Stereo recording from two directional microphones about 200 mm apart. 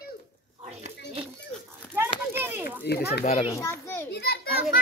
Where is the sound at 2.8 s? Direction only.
55° left (ahead or behind).